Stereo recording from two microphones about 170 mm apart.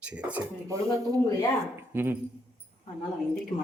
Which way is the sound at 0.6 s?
20° right (ahead or behind).